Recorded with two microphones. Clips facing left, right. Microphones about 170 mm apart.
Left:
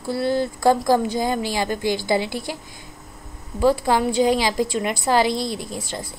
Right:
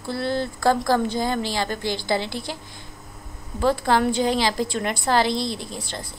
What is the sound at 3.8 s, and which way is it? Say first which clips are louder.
A woman's voice: left 2 dB; 10° left (ahead or behind).